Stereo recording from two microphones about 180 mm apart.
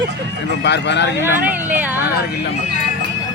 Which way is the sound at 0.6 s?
75° left (ahead or behind).